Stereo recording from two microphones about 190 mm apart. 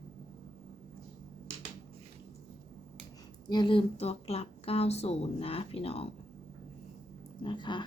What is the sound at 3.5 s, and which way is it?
Speech, 25° left (ahead or behind).